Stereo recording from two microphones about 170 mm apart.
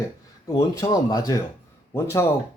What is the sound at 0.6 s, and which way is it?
Speech, 20° left (ahead or behind).